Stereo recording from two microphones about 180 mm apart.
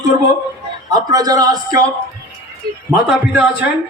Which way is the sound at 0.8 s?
20° right (ahead or behind).